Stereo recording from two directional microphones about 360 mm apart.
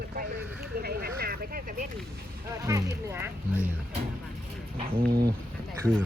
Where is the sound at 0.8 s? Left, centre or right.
Right.